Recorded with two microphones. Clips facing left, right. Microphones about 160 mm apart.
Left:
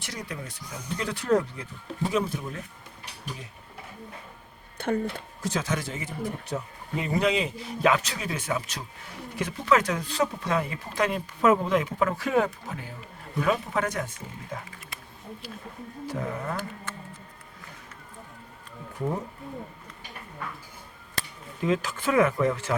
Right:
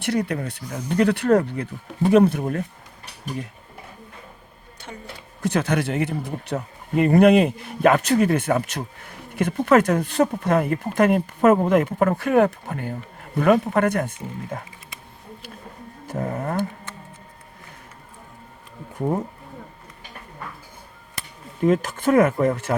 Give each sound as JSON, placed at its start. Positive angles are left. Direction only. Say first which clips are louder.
{"t": 0.0, "sound": "speech", "louder": "right 13 dB", "side_deg": -60}
{"t": 4.8, "sound": "speech", "louder": "left 12 dB", "side_deg": 55}
{"t": 5.4, "sound": "speech", "louder": "right 8 dB", "side_deg": -60}
{"t": 16.0, "sound": "speech", "louder": "right 5 dB", "side_deg": -45}
{"t": 21.6, "sound": "speech", "louder": "right 7 dB", "side_deg": -50}